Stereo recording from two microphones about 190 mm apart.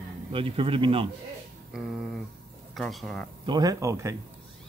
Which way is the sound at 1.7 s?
Centre (ahead or behind).